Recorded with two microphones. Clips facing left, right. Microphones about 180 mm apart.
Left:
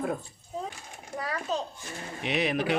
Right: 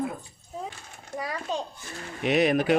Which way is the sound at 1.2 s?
10° right (ahead or behind).